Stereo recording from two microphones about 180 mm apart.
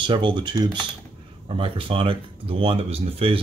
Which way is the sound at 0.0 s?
25° right (ahead or behind).